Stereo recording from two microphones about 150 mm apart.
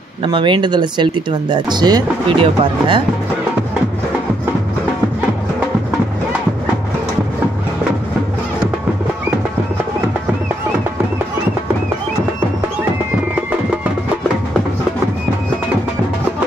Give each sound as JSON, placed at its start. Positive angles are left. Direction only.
{"t": 0.2, "sound": "speech", "side_deg": -35}